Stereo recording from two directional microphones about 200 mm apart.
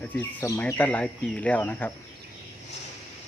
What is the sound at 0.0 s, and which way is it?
Speech, 10° left (ahead or behind).